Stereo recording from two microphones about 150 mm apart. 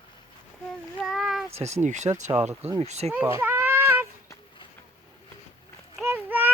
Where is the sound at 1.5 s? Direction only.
45° right (ahead or behind).